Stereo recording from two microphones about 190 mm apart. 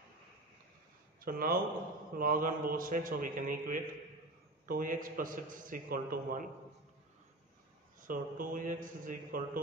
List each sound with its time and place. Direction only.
1.2 s a man's voice: 50° right (ahead or behind)
8.0 s a man's voice: 45° right (ahead or behind)